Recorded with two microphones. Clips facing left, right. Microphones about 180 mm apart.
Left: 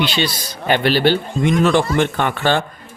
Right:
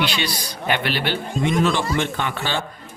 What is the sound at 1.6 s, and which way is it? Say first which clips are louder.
Speech: left 6 dB; 55° left (ahead or behind).